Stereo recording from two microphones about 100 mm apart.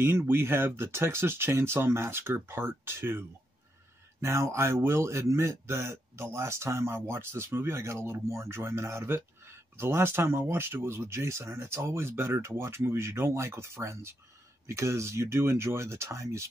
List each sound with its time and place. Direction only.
0.0 s speech: 25° right (ahead or behind)